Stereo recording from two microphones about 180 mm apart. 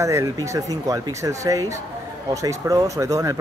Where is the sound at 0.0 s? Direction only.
15° right (ahead or behind).